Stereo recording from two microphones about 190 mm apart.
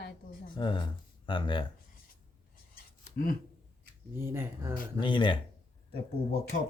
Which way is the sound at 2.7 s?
50° left (ahead or behind).